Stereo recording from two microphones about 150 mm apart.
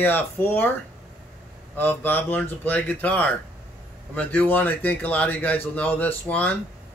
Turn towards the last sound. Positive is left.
turn(degrees=10)  # may be behind; listen again after turning